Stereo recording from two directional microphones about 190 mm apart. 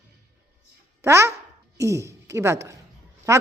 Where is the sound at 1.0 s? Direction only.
15° right (ahead or behind).